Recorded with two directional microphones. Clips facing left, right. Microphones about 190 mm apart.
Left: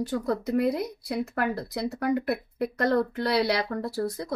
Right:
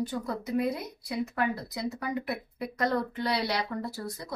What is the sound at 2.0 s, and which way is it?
Speech, 55° left (ahead or behind).